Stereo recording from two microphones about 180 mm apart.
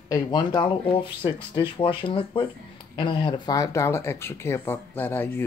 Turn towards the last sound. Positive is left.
turn(degrees=10)  # may be behind; listen again after turning